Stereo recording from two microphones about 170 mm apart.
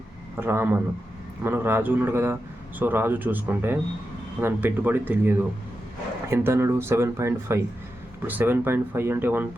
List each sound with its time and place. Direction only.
0.3 s a man's voice: 15° right (ahead or behind)